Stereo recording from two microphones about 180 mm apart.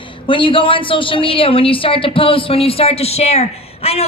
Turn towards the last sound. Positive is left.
turn(degrees=35)  # may be behind; listen again after turning